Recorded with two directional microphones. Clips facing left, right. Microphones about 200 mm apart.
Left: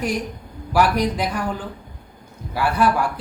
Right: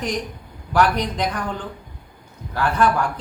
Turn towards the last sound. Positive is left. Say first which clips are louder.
# even
turn(degrees=10)  # may be behind; listen again after turning